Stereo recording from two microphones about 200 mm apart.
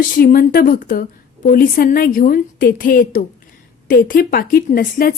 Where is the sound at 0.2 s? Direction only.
45° left (ahead or behind).